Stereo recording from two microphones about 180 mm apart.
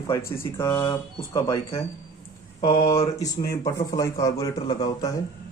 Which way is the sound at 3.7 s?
20° left (ahead or behind).